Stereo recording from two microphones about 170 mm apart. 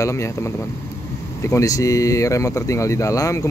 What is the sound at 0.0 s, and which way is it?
Speech, 15° left (ahead or behind).